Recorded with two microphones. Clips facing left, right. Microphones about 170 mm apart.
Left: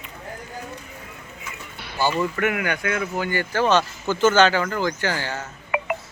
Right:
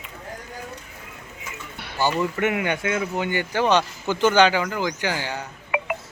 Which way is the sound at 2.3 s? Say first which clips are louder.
Right 1 dB; 25° right (ahead or behind).